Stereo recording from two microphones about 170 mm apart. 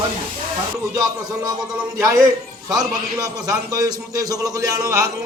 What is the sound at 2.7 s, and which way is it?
A man's voice, 20° right (ahead or behind).